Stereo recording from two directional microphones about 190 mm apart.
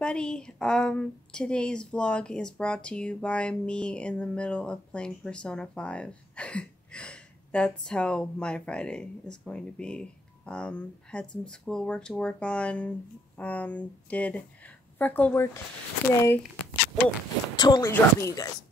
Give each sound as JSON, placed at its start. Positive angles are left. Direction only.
{"t": 0.0, "sound": "a woman's voice", "side_deg": 5}
{"t": 17.6, "sound": "speech", "side_deg": 20}